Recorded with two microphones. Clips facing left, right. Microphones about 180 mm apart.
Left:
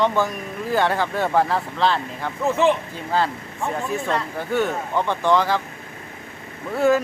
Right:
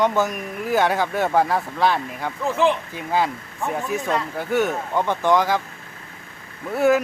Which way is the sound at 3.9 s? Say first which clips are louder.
Right 1 dB; 15° right (ahead or behind).